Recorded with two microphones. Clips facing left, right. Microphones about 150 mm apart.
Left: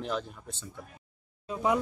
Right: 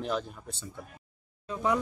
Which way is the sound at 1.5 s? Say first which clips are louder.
Left 1 dB; 20° left (ahead or behind).